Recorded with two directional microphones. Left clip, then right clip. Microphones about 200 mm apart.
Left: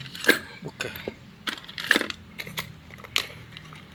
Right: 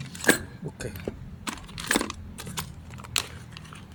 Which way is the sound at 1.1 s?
15° right (ahead or behind).